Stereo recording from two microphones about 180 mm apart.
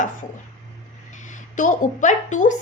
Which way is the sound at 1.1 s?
45° left (ahead or behind).